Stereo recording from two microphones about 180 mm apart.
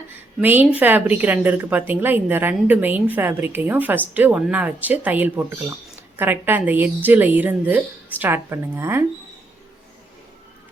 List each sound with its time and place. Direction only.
0.4 s a woman's voice: 10° right (ahead or behind)